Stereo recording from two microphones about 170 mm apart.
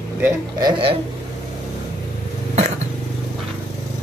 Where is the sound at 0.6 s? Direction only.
30° right (ahead or behind).